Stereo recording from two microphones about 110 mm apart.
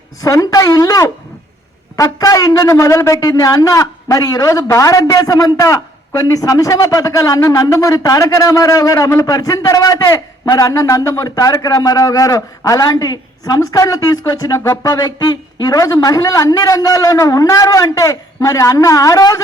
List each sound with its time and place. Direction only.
0.2 s a man's voice: 30° left (ahead or behind)